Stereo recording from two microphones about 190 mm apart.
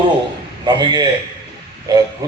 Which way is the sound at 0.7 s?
20° right (ahead or behind).